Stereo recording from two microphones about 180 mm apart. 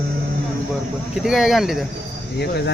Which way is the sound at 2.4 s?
65° left (ahead or behind).